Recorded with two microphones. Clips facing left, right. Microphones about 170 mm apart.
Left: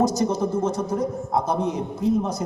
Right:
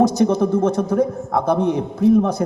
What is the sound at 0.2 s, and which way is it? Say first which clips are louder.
A man's voice: right 6 dB; 60° right (ahead or behind).